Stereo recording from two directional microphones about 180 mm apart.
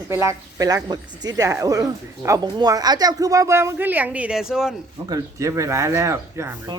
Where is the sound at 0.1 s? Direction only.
15° right (ahead or behind).